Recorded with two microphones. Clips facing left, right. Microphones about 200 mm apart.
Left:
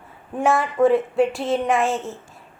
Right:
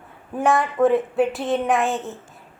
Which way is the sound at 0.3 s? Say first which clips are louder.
Even; centre (ahead or behind).